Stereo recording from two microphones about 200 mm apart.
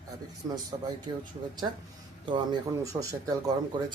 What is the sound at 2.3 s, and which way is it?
Speech, 20° right (ahead or behind).